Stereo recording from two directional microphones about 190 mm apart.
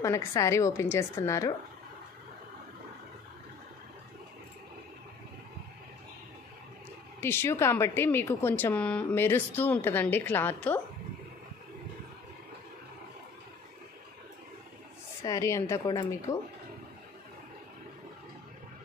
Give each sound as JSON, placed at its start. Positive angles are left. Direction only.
{"t": 0.0, "sound": "speech", "side_deg": 15}
{"t": 7.2, "sound": "speech", "side_deg": 10}
{"t": 15.2, "sound": "speech", "side_deg": 15}